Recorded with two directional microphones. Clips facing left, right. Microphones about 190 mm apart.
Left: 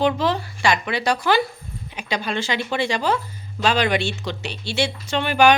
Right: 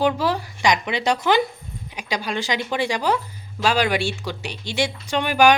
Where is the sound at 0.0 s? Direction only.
10° right (ahead or behind).